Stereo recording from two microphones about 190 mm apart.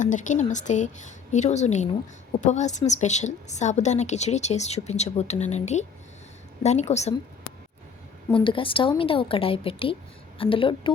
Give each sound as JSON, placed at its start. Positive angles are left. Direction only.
{"t": 0.0, "sound": "a woman's voice", "side_deg": 40}
{"t": 8.3, "sound": "a woman's voice", "side_deg": 25}